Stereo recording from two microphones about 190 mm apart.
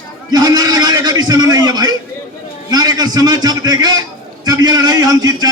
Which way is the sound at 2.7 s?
20° right (ahead or behind).